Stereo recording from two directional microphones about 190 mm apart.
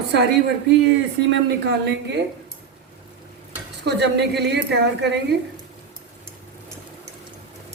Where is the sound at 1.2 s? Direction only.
65° right (ahead or behind).